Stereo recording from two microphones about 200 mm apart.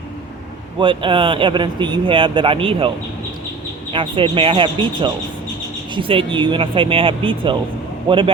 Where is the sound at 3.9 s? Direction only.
25° right (ahead or behind).